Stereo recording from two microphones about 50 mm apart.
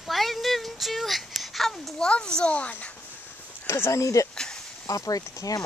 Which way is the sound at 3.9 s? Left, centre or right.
Left.